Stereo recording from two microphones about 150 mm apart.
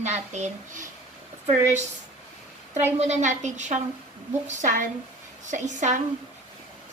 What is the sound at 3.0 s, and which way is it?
A woman's voice, 50° right (ahead or behind).